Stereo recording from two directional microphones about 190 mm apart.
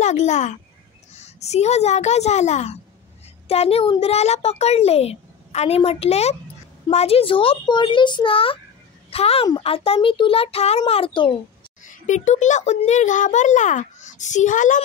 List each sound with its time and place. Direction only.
0.0 s a child's voice: 40° left (ahead or behind)
11.8 s a child's voice: 40° left (ahead or behind)